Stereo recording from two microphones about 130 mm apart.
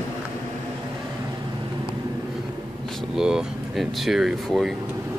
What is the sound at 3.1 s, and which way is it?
Air conditioning, 5° right (ahead or behind).